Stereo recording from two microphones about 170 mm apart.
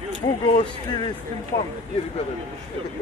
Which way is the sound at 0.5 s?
30° left (ahead or behind).